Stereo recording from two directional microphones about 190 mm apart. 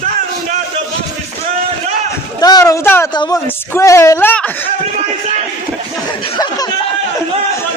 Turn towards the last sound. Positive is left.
turn(degrees=20)  # may be behind; listen again after turning